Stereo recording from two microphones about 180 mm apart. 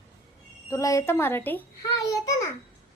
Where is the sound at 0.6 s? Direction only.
15° left (ahead or behind).